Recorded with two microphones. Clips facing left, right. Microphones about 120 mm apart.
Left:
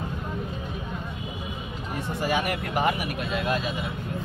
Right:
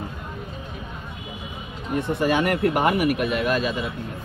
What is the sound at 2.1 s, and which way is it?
Speech, 65° right (ahead or behind).